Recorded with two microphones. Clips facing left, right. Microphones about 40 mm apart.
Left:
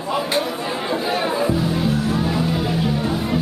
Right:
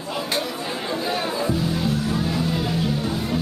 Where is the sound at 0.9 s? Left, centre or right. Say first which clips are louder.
Left 4 dB; centre.